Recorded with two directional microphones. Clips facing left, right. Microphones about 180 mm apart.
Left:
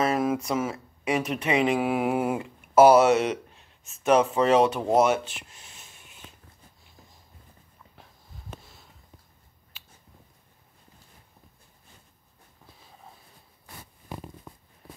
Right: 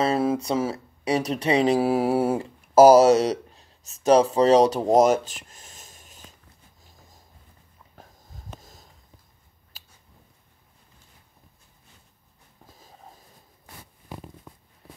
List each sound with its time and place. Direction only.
0.0 s speech: 30° right (ahead or behind)
8.5 s sniff: 40° right (ahead or behind)
9.7 s finger snapping: 35° right (ahead or behind)